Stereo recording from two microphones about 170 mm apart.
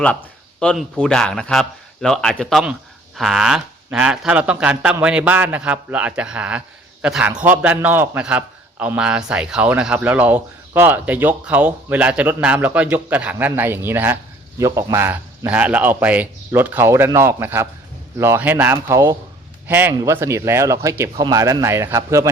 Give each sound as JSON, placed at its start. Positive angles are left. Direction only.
{"t": 0.0, "sound": "a man's voice", "side_deg": 10}